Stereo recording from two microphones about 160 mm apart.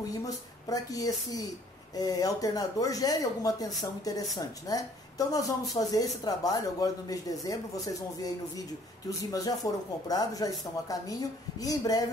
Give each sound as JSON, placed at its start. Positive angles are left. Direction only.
{"t": 0.2, "sound": "speech", "side_deg": 20}